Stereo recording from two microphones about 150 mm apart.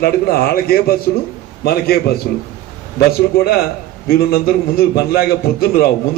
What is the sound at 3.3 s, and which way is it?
A man's voice, 90° left.